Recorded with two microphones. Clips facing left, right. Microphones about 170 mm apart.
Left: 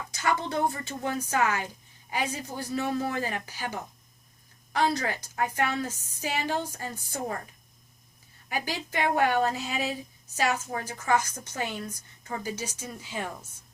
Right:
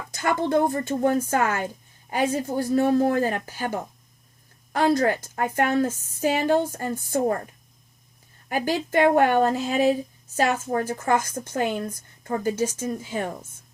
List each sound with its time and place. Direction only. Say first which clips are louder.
0.1 s speech: right 7 dB; 50° right (ahead or behind)
8.4 s speech: right 8 dB; 50° right (ahead or behind)